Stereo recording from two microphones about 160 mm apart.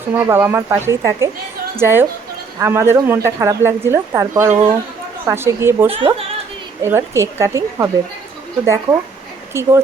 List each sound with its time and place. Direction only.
0.1 s speech: 15° right (ahead or behind)